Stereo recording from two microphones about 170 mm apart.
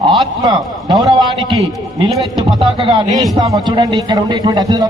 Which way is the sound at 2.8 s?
30° right (ahead or behind).